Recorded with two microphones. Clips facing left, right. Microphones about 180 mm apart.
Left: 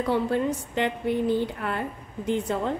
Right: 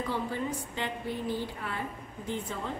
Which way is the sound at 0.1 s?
70° left (ahead or behind).